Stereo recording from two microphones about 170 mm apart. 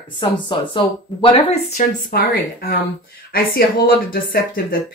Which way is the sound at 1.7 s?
60° left (ahead or behind).